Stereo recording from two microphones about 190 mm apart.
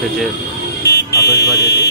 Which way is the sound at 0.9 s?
60° left (ahead or behind).